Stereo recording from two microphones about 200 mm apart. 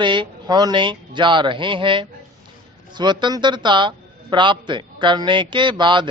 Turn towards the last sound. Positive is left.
turn(degrees=-25)  # may be behind; listen again after turning